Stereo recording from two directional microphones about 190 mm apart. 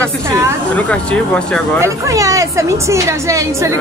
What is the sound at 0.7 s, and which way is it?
Speech, 5° left (ahead or behind).